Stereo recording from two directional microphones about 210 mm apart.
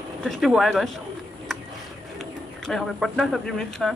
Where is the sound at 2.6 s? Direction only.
Centre (ahead or behind).